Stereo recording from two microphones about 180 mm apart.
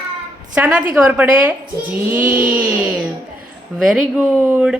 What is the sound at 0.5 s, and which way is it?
A woman's voice, 5° right (ahead or behind).